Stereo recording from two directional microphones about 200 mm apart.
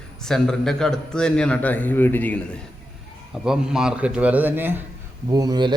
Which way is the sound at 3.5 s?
5° right (ahead or behind).